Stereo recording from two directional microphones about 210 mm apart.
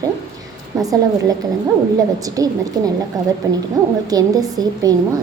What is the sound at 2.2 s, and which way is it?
A woman's voice, 15° right (ahead or behind).